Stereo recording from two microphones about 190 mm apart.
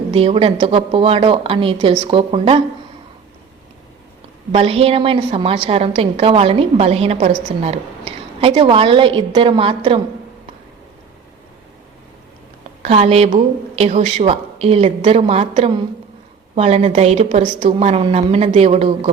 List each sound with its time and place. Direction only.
0.1 s a woman's voice: 30° right (ahead or behind)
4.5 s a woman's voice: 30° right (ahead or behind)
12.8 s speech: 35° right (ahead or behind)
17.7 s speech: 30° right (ahead or behind)